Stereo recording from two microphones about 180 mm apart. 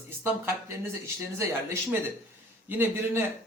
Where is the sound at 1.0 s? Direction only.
15° right (ahead or behind).